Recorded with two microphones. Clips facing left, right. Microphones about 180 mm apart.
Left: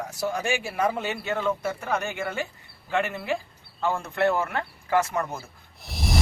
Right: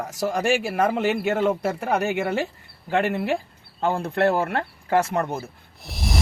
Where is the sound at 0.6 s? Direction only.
75° right (ahead or behind).